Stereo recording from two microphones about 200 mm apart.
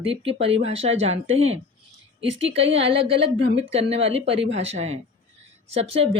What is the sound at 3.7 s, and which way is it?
Speech, 30° right (ahead or behind).